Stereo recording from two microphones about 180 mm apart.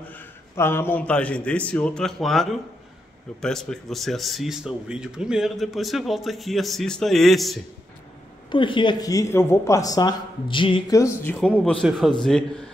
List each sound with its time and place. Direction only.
0.1 s a man's voice: 15° left (ahead or behind)
8.5 s speech: 25° left (ahead or behind)
11.0 s speech: 15° left (ahead or behind)
11.3 s speech: 5° left (ahead or behind)